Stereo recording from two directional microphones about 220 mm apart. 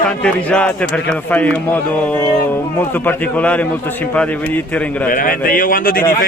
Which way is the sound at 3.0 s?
5° left (ahead or behind).